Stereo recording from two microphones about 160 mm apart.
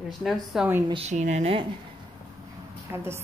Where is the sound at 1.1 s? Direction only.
45° right (ahead or behind).